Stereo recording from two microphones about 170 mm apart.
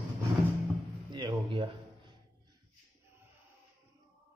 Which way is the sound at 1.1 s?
30° right (ahead or behind).